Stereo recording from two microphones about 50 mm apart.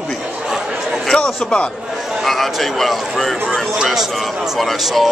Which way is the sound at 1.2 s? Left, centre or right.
Left.